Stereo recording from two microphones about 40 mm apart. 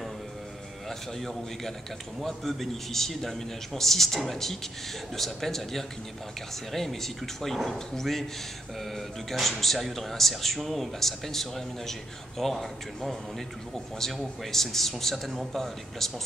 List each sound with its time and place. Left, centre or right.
0.8 s a sound: centre
2.2 s a man's voice: centre
14.4 s a man's voice: centre